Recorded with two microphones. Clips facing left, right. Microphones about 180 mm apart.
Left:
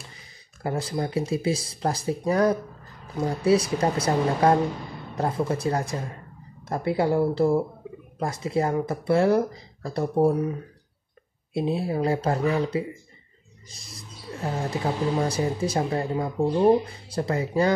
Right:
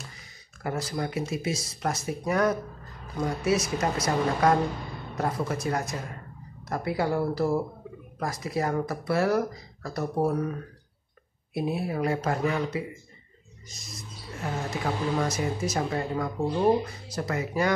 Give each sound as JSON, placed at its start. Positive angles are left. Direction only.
{"t": 0.6, "sound": "speech", "side_deg": 30}